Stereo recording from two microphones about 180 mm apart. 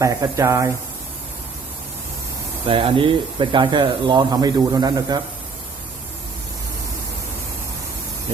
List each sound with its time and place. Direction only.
0.0 s speech: 15° right (ahead or behind)
2.6 s speech: 30° right (ahead or behind)